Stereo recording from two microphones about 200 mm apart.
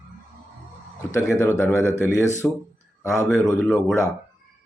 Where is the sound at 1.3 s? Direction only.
15° left (ahead or behind).